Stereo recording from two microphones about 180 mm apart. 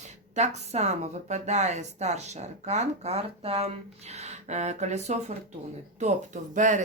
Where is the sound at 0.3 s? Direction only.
40° right (ahead or behind).